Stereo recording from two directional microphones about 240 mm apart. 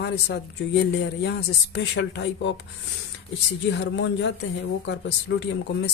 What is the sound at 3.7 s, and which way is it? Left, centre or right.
Speech, left.